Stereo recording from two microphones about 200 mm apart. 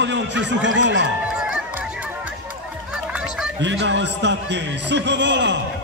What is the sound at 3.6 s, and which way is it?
A man's voice, 65° right (ahead or behind).